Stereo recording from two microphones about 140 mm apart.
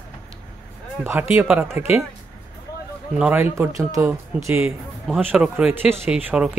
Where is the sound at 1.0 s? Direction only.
15° right (ahead or behind).